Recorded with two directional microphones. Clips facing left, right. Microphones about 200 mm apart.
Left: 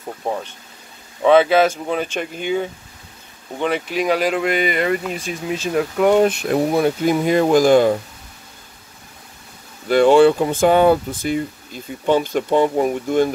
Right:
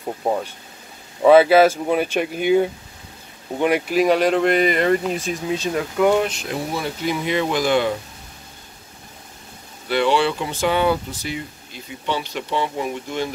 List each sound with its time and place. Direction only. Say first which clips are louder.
0.2 s speech: right 2 dB; 15° right (ahead or behind)
5.8 s speech: left 3 dB; 20° left (ahead or behind)
6.2 s speech: left 9 dB; 55° left (ahead or behind)
9.8 s speech: left 8 dB; 45° left (ahead or behind)